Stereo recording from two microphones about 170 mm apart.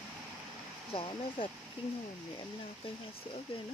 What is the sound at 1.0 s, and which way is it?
Speech, 30° left (ahead or behind).